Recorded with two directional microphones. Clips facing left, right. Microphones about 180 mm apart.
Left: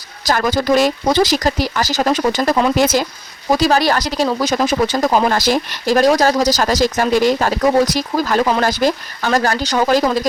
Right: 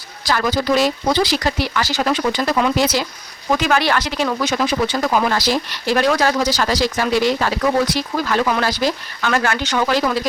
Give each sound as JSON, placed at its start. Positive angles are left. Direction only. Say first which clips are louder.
{"t": 0.3, "sound": "speech", "louder": "left 3 dB", "side_deg": 45}
{"t": 3.5, "sound": "speech", "louder": "left 3 dB", "side_deg": 35}